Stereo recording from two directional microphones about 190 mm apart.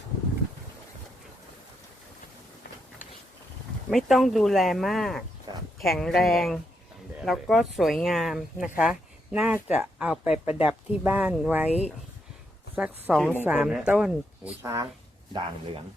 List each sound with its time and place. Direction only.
3.8 s speech: centre (ahead or behind)
12.7 s speech: 5° right (ahead or behind); by 15.8 s 25° right (ahead or behind)